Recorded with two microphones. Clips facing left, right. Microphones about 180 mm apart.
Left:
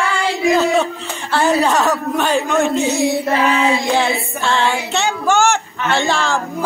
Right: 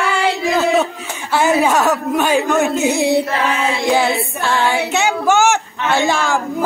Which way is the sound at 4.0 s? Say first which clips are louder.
Right 1 dB; 5° right (ahead or behind).